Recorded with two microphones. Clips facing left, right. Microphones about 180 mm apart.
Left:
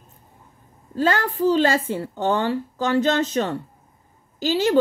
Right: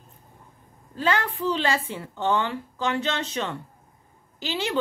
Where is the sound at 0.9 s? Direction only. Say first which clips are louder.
Left 4 dB; 40° left (ahead or behind).